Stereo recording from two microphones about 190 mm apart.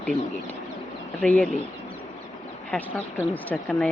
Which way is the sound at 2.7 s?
10° left (ahead or behind).